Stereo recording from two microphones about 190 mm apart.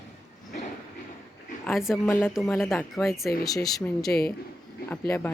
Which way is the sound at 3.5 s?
20° left (ahead or behind).